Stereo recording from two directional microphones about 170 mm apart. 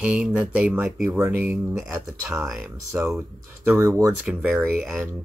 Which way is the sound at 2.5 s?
15° right (ahead or behind).